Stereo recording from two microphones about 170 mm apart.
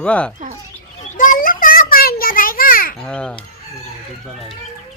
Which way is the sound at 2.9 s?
5° left (ahead or behind).